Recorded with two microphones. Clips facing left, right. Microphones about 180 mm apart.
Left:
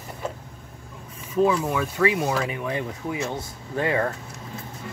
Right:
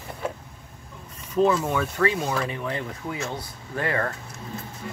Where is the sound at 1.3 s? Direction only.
5° left (ahead or behind).